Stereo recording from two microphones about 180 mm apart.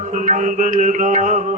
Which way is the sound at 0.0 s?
45° right (ahead or behind).